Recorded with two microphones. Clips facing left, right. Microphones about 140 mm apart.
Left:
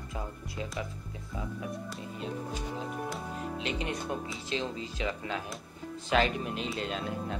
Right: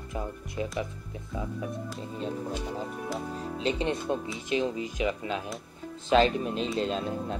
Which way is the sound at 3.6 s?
30° right (ahead or behind).